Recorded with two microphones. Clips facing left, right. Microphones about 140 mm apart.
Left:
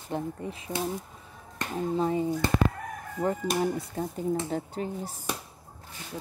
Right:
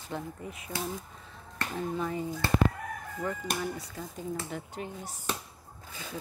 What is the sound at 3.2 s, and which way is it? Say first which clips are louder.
Speech: left 7 dB; 35° left (ahead or behind).